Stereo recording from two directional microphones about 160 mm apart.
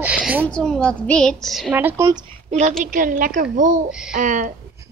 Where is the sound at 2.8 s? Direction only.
55° right (ahead or behind).